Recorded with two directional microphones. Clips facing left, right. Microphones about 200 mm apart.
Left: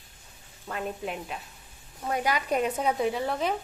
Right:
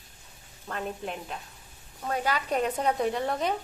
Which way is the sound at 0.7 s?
5° left (ahead or behind).